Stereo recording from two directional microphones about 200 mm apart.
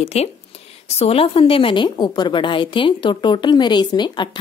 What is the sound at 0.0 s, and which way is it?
A woman's voice, 30° left (ahead or behind).